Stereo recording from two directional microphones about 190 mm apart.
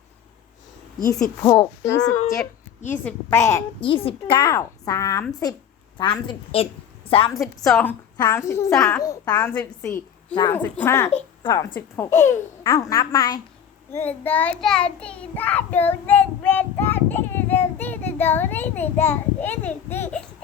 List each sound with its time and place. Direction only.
1.4 s child singing: 15° left (ahead or behind)
2.4 s a woman's voice: 10° left (ahead or behind)
3.8 s a woman's voice: 30° left (ahead or behind)
7.3 s a woman's voice: centre (ahead or behind)
8.1 s child singing: 15° left (ahead or behind)
9.0 s a woman's voice: 20° left (ahead or behind)
9.4 s a woman's voice: 10° left (ahead or behind)
10.5 s child singing: 10° left (ahead or behind)